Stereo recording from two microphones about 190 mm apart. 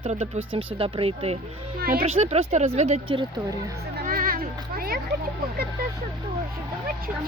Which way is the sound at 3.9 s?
50° right (ahead or behind).